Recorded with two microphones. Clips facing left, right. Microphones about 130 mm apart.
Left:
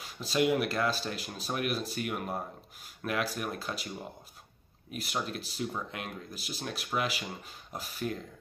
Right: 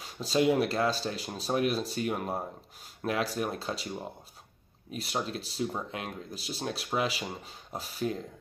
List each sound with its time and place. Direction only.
0.2 s speech: 30° right (ahead or behind)
4.9 s speech: 30° right (ahead or behind)